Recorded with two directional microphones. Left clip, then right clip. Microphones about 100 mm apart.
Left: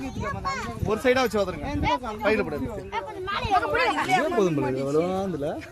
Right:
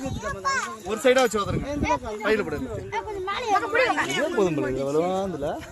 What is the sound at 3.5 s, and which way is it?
Speech, 20° left (ahead or behind).